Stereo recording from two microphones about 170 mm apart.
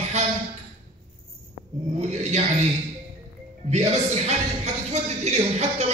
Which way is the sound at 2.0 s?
40° right (ahead or behind).